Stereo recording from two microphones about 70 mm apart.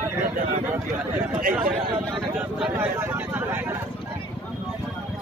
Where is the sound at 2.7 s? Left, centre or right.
Right.